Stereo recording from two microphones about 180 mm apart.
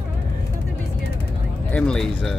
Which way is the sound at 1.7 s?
5° left (ahead or behind).